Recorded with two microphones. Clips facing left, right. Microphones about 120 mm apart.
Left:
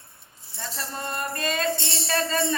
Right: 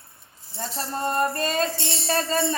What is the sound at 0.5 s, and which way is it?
Speech, 40° right (ahead or behind).